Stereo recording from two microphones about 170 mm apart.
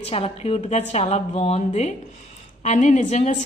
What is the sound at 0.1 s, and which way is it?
A woman's voice, 35° left (ahead or behind).